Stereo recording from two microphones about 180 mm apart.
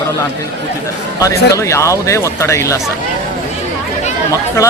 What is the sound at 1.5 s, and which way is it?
Speech, 15° left (ahead or behind).